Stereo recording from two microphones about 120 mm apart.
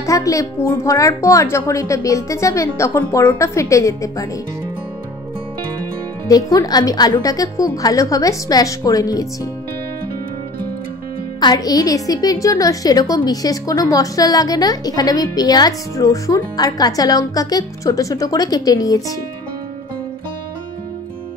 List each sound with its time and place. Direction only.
0.0 s a woman's voice: 25° left (ahead or behind)
6.2 s a woman's voice: 30° left (ahead or behind)
11.3 s a woman's voice: 35° left (ahead or behind)